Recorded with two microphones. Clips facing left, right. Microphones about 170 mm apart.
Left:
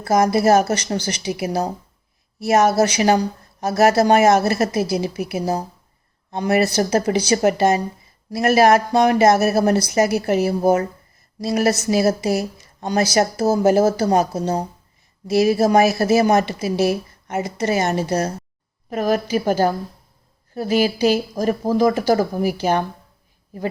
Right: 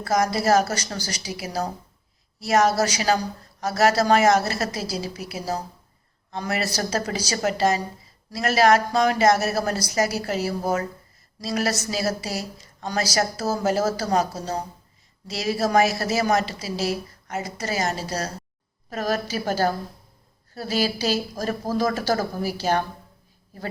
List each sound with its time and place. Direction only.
0.0 s speech: 25° left (ahead or behind)
6.3 s speech: 20° left (ahead or behind)
16.6 s a woman's voice: 60° left (ahead or behind)
17.2 s speech: 25° left (ahead or behind)